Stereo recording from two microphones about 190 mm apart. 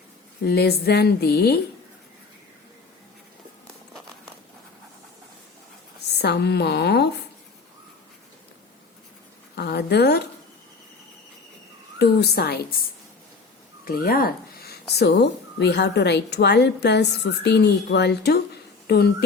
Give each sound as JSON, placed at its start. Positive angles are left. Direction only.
{"t": 0.4, "sound": "speech", "side_deg": 60}
{"t": 6.1, "sound": "speech", "side_deg": 60}
{"t": 9.6, "sound": "speech", "side_deg": 60}
{"t": 11.9, "sound": "speech", "side_deg": 60}
{"t": 13.8, "sound": "speech", "side_deg": 50}